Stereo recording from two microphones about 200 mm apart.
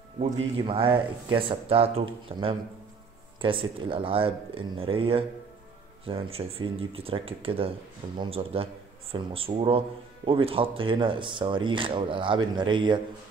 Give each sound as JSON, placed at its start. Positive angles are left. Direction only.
{"t": 0.2, "sound": "speech", "side_deg": -25}